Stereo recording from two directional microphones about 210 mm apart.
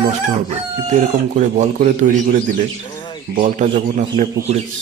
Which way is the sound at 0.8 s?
35° right (ahead or behind).